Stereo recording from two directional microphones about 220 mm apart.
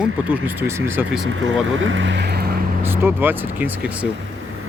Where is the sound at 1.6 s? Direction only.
60° right (ahead or behind).